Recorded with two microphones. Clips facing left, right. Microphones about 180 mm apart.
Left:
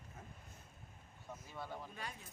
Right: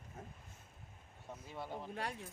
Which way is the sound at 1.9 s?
70° right (ahead or behind).